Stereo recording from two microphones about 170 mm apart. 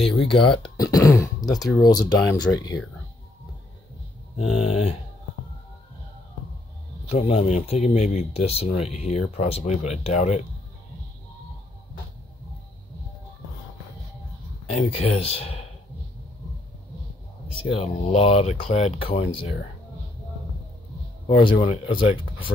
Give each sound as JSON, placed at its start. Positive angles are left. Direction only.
{"t": 0.0, "sound": "speech", "side_deg": 30}
{"t": 1.5, "sound": "speech", "side_deg": 0}
{"t": 1.9, "sound": "speech", "side_deg": 25}
{"t": 4.4, "sound": "speech", "side_deg": 0}
{"t": 4.6, "sound": "speech", "side_deg": 40}
{"t": 7.1, "sound": "speech", "side_deg": 40}
{"t": 14.7, "sound": "speech", "side_deg": 40}
{"t": 17.6, "sound": "speech", "side_deg": 35}
{"t": 21.3, "sound": "speech", "side_deg": 30}